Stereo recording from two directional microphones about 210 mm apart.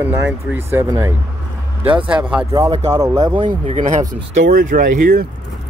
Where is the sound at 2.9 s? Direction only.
15° right (ahead or behind).